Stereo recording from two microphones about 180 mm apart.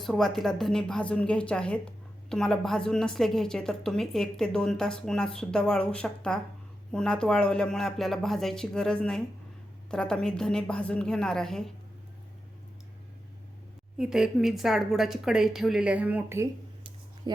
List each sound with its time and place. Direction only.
0.0 s a woman's voice: centre (ahead or behind)
14.0 s a woman's voice: 5° right (ahead or behind)
17.2 s speech: 25° right (ahead or behind)